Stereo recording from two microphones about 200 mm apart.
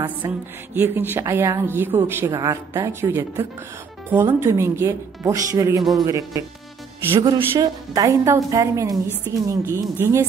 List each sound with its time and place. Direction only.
0.2 s speech: 15° right (ahead or behind)